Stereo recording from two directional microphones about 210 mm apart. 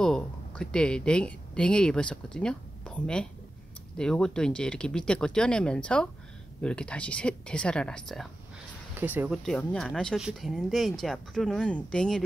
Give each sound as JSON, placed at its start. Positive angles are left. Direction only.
{"t": 0.0, "sound": "speech", "side_deg": 5}
{"t": 9.0, "sound": "speech", "side_deg": -10}
{"t": 9.4, "sound": "speech", "side_deg": 5}